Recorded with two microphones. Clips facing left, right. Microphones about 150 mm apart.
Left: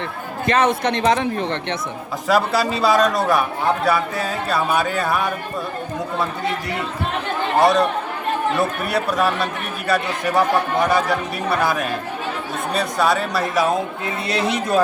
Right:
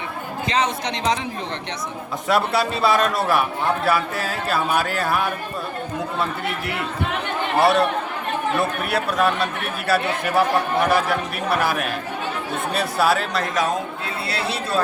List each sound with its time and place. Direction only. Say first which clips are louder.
0.4 s a man's voice: left 5 dB; 55° left (ahead or behind)
2.2 s speech: left 2 dB; centre (ahead or behind)
7.6 s speech: left 1 dB; 5° right (ahead or behind)
12.7 s speech: left 1 dB; 5° right (ahead or behind)
14.3 s speech: left 6 dB; 20° left (ahead or behind)